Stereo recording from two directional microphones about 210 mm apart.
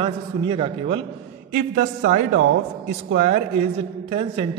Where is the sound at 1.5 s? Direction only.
40° right (ahead or behind).